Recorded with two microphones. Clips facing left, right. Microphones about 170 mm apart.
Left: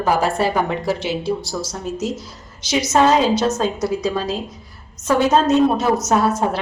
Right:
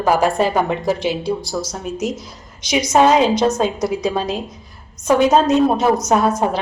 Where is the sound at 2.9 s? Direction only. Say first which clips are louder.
Right 2 dB; 15° right (ahead or behind).